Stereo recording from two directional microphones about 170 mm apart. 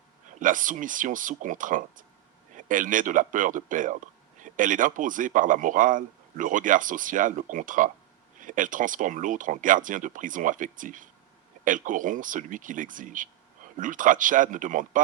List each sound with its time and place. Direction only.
0.3 s speech: 50° right (ahead or behind)